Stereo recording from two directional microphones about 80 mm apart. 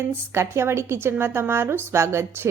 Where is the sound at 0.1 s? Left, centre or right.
Right.